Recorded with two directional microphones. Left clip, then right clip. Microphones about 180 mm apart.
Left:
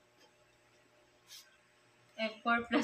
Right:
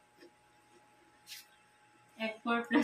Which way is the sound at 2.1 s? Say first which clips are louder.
Left 2 dB; 35° left (ahead or behind).